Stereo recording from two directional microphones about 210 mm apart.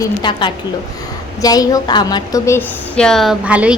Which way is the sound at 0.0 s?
20° left (ahead or behind).